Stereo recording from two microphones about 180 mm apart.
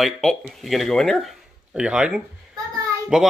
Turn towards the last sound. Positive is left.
turn(degrees=0)  # may be behind; listen again after turning